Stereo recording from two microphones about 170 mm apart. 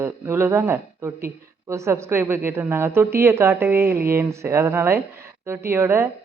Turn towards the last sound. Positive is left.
turn(degrees=-15)  # may be behind; listen again after turning